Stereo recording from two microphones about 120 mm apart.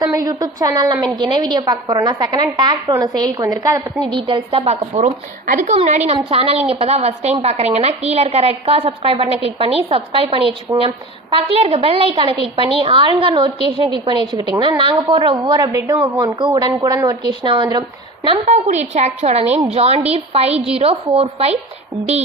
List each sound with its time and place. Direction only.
0.0 s a woman's voice: 30° right (ahead or behind)
3.7 s a woman's voice: 15° right (ahead or behind)
4.0 s a woman's voice: 40° right (ahead or behind); by 6.0 s 70° right (ahead or behind)
6.3 s a woman's voice: 55° right (ahead or behind); by 18.3 s 40° right (ahead or behind)
18.4 s a woman's voice: 70° right (ahead or behind); by 21.6 s 55° right (ahead or behind)